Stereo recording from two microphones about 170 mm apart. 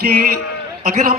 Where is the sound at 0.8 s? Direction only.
50° right (ahead or behind).